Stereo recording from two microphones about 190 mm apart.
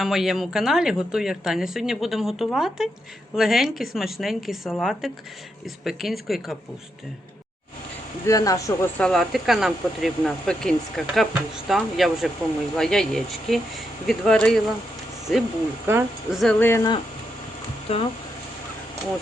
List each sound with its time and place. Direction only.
0.0 s speech: centre (ahead or behind)
8.3 s speech: 15° left (ahead or behind)
9.0 s speech: 5° left (ahead or behind); by 17.0 s 20° left (ahead or behind)
17.9 s speech: 35° left (ahead or behind)